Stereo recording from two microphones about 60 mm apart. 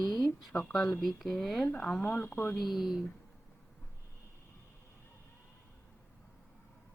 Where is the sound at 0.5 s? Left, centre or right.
Left.